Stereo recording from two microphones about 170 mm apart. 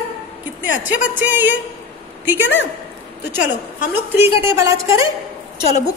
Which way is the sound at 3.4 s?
50° left (ahead or behind).